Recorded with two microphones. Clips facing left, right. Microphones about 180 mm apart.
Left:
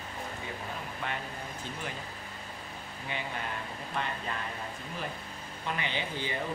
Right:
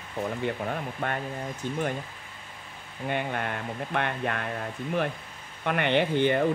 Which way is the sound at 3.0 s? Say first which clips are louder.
Right 8 dB; 55° right (ahead or behind).